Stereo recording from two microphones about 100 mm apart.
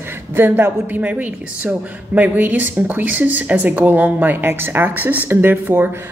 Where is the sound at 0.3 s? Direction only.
20° right (ahead or behind).